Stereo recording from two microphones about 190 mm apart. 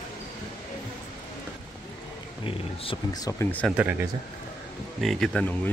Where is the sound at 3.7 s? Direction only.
5° right (ahead or behind).